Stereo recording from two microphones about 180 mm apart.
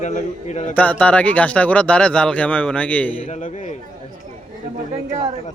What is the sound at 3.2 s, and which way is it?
Speech, 45° left (ahead or behind).